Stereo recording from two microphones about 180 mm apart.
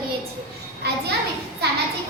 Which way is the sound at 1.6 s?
65° right (ahead or behind).